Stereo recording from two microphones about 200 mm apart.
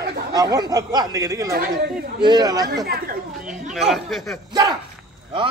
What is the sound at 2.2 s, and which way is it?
Speech, 20° right (ahead or behind).